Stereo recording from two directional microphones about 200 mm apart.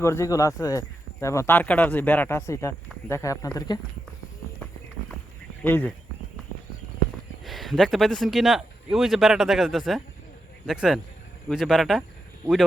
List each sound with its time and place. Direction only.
0.0 s speech: 15° left (ahead or behind)
5.6 s speech: 10° left (ahead or behind)
7.4 s speech: centre (ahead or behind)